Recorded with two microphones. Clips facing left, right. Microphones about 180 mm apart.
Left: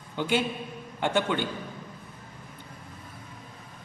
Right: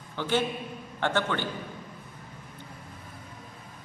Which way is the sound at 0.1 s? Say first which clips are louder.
Left 1 dB; 15° left (ahead or behind).